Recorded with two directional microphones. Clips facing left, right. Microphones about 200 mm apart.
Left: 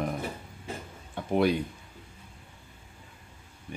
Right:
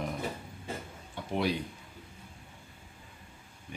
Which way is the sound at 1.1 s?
50° left (ahead or behind).